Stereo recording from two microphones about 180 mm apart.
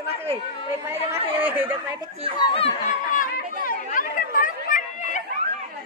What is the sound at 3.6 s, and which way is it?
Chatter, 50° left (ahead or behind).